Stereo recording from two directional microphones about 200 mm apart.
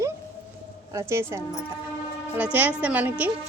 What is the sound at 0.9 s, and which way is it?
A woman's voice, 15° right (ahead or behind).